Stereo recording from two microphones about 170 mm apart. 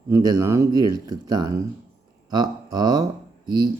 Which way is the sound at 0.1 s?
20° right (ahead or behind).